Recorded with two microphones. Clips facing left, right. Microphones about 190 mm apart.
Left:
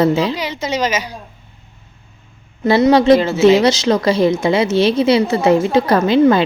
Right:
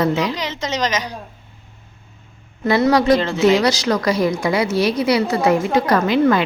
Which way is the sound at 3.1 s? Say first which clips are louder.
Left 4 dB; 5° left (ahead or behind).